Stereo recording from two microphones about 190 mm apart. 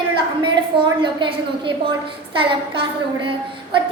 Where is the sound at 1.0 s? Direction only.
25° right (ahead or behind).